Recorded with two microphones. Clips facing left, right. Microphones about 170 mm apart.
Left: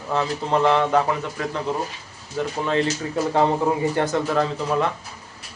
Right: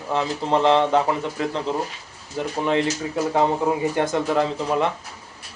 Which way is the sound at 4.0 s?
20° right (ahead or behind).